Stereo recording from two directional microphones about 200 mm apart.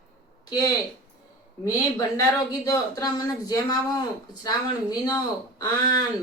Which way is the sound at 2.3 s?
15° left (ahead or behind).